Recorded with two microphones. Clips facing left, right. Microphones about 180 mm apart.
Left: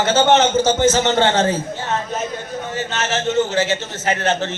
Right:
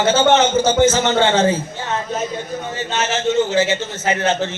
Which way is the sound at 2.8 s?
15° right (ahead or behind).